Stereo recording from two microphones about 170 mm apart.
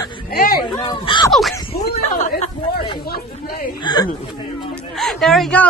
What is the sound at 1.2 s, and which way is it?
Speech, centre (ahead or behind).